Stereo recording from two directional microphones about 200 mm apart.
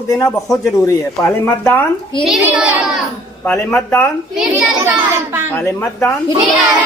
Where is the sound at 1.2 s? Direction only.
5° left (ahead or behind).